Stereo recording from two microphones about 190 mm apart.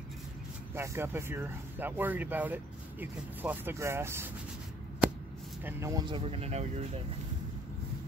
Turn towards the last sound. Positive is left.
turn(degrees=-35)  # may be behind; listen again after turning